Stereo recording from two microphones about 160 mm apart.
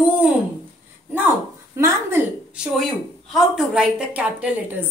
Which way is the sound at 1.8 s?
20° right (ahead or behind).